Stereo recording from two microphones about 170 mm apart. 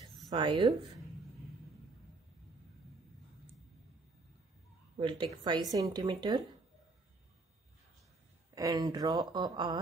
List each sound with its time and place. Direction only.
0.3 s speech: 25° right (ahead or behind)
4.9 s speech: 30° right (ahead or behind)
8.5 s speech: 20° right (ahead or behind)